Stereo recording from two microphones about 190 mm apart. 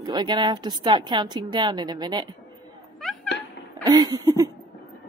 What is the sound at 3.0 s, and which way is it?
Speech, centre (ahead or behind).